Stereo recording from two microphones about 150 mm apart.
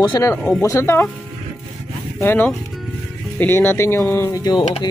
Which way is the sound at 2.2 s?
15° left (ahead or behind).